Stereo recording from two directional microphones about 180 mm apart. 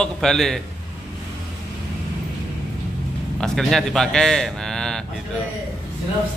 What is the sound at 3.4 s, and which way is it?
A man's voice, centre (ahead or behind).